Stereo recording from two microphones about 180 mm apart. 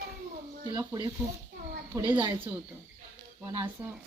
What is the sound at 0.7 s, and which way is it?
Speech, 20° right (ahead or behind).